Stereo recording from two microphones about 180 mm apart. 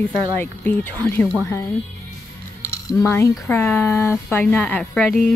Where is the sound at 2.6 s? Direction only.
15° left (ahead or behind).